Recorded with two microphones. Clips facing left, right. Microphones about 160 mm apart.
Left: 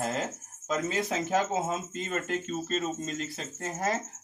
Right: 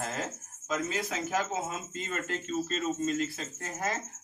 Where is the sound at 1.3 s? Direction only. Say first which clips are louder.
Left 4 dB; 20° left (ahead or behind).